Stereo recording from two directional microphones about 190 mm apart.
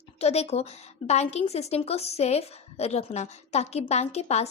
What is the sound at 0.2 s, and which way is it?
A woman's voice, 35° left (ahead or behind).